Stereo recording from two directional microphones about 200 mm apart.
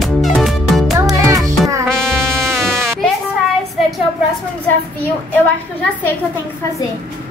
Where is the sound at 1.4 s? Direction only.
15° right (ahead or behind).